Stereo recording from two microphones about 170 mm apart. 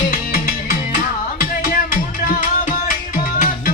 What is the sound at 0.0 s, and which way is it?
Music, 45° left (ahead or behind).